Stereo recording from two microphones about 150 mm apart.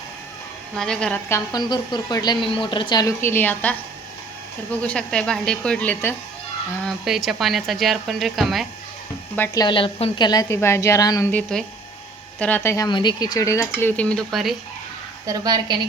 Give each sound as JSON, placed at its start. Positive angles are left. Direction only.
{"t": 0.8, "sound": "speech", "side_deg": 5}
{"t": 1.3, "sound": "a woman's voice", "side_deg": 25}
{"t": 3.2, "sound": "speech", "side_deg": 15}
{"t": 6.8, "sound": "speech", "side_deg": 0}
{"t": 9.6, "sound": "a woman's voice", "side_deg": 35}
{"t": 11.3, "sound": "speech", "side_deg": 10}
{"t": 15.3, "sound": "a woman's voice", "side_deg": -25}